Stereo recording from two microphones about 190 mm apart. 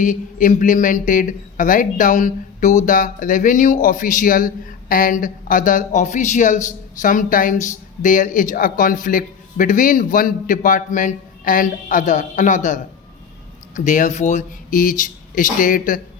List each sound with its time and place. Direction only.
0.0 s speech: 45° left (ahead or behind)